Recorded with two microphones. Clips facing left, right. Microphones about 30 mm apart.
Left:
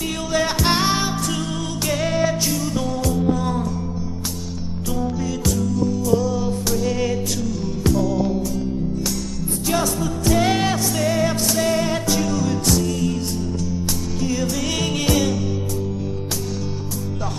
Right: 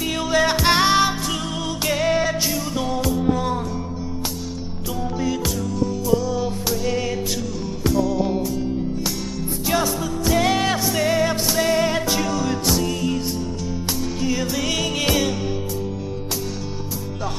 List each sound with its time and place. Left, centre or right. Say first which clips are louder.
0.3 s music: right 2 dB; centre
5.5 s music: left 2 dB; centre
9.7 s music: even; centre
10.7 s music: right 1 dB; centre